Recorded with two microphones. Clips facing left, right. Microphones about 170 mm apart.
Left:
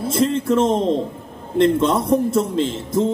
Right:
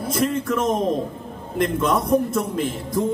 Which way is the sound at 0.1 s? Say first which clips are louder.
Left 4 dB; 25° left (ahead or behind).